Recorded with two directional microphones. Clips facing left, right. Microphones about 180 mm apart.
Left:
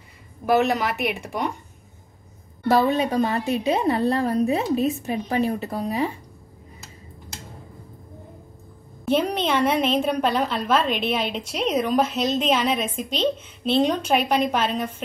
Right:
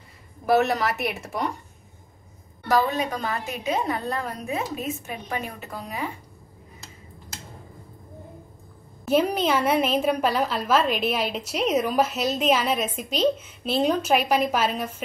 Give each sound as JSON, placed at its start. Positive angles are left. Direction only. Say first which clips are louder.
{"t": 0.5, "sound": "a woman's voice", "louder": "left 1 dB", "side_deg": 0}
{"t": 2.7, "sound": "a woman's voice", "louder": "left 4 dB", "side_deg": 25}
{"t": 9.0, "sound": "a woman's voice", "louder": "even", "side_deg": -5}